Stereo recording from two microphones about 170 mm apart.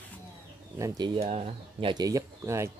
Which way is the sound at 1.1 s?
35° right (ahead or behind).